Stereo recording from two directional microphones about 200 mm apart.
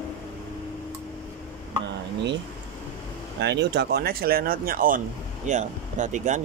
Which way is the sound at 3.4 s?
60° right (ahead or behind).